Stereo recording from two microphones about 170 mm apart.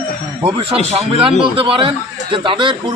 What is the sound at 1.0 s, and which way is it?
A man's voice, 35° right (ahead or behind).